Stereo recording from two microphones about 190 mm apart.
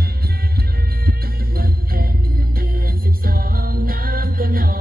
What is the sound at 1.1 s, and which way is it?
Music, 50° right (ahead or behind).